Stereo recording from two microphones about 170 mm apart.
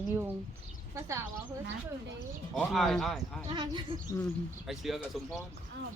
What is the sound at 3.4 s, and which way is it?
Speech, 25° right (ahead or behind).